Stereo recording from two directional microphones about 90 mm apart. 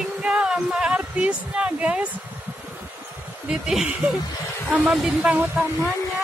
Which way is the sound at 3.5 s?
5° right (ahead or behind).